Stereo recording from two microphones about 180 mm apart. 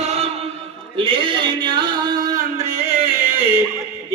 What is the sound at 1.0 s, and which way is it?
Male singing, 30° right (ahead or behind).